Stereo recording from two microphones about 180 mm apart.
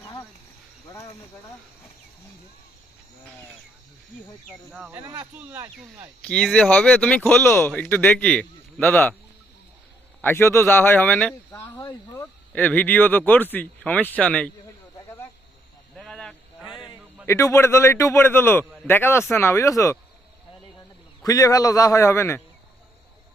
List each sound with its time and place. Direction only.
4.9 s speech: 15° right (ahead or behind)
6.2 s speech: 5° left (ahead or behind)
10.2 s speech: 10° left (ahead or behind)
11.5 s speech: 15° left (ahead or behind)
16.0 s snake: 5° left (ahead or behind)
16.7 s a sound: 25° left (ahead or behind)
17.2 s speech: 15° left (ahead or behind)
21.2 s a man's voice: 20° left (ahead or behind)